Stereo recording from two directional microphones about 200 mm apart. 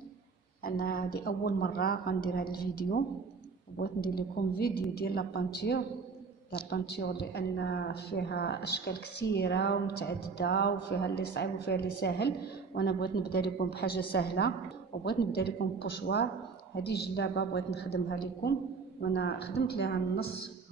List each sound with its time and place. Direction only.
0.7 s a woman's voice: 45° left (ahead or behind)